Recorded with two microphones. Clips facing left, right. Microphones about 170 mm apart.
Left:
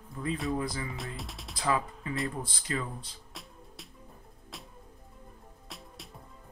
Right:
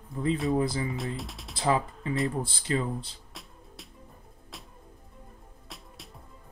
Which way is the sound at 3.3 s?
Centre (ahead or behind).